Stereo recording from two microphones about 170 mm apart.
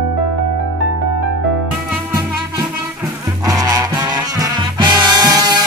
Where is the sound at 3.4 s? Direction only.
20° right (ahead or behind).